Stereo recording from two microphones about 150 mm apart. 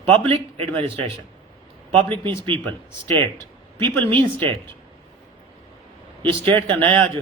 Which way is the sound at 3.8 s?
35° right (ahead or behind).